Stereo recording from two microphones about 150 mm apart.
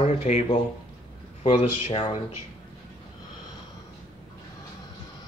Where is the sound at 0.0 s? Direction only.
45° left (ahead or behind).